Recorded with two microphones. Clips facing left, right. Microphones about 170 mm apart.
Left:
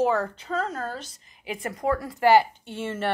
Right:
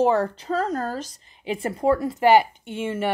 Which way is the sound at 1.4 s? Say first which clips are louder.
Right 5 dB; 25° right (ahead or behind).